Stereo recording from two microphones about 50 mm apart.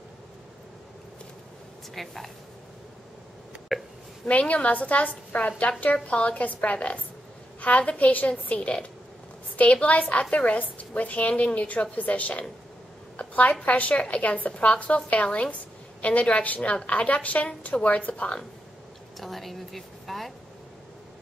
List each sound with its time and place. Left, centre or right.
2.0 s a woman's voice: centre
3.7 s a woman's voice: centre
4.3 s a woman's voice: left
13.2 s a sound: left
13.6 s a woman's voice: left
19.1 s a woman's voice: centre